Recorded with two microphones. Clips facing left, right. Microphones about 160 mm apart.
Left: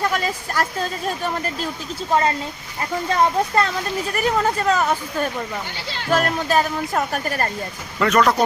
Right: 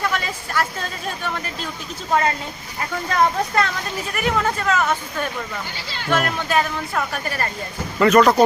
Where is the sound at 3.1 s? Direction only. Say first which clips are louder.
Left 1 dB; 35° left (ahead or behind).